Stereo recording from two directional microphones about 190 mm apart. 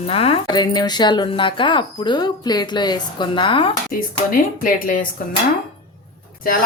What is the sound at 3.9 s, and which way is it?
Speech, 50° left (ahead or behind).